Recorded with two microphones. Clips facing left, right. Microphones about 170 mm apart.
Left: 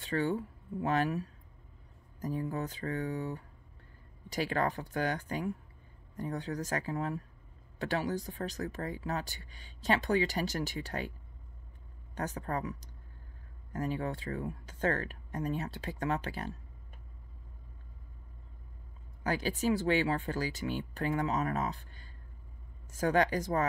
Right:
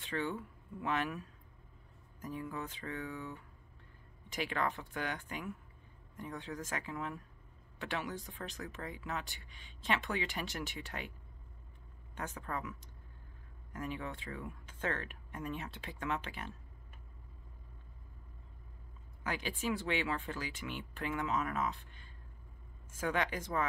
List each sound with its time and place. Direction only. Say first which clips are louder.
0.0 s speech: left 6 dB; 40° left (ahead or behind)
12.2 s speech: left 6 dB; 40° left (ahead or behind)
19.2 s speech: left 6 dB; 40° left (ahead or behind)